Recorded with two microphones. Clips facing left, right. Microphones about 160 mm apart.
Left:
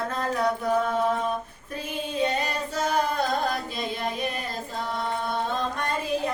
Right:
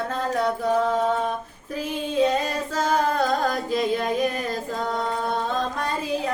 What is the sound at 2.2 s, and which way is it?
Child singing, 90° right.